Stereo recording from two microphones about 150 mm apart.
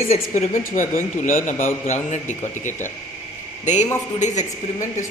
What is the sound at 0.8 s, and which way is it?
A man's voice, 55° left (ahead or behind).